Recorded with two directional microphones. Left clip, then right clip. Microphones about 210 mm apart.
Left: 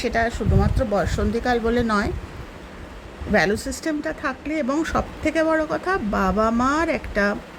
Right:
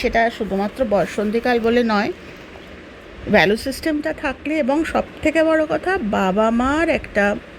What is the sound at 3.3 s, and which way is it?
Speech, 15° right (ahead or behind).